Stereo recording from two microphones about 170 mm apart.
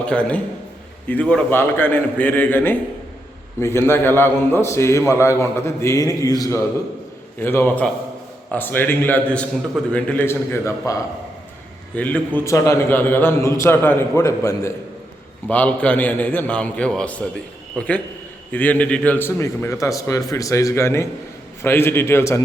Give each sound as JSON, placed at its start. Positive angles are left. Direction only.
{"t": 0.0, "sound": "a man's voice", "side_deg": 5}
{"t": 11.9, "sound": "a man's voice", "side_deg": 10}